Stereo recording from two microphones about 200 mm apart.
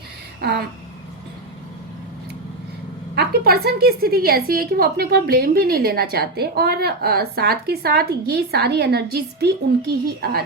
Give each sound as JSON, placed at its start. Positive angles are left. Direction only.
{"t": 0.4, "sound": "a woman's voice", "side_deg": -55}
{"t": 3.2, "sound": "a woman's voice", "side_deg": -50}